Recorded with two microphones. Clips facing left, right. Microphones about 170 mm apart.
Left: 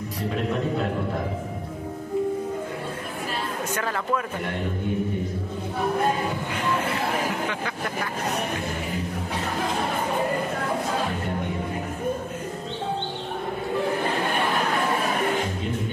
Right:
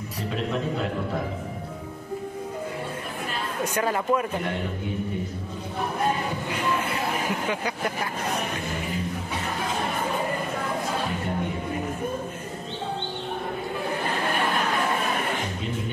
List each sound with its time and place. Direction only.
3.7 s speech: 15° right (ahead or behind)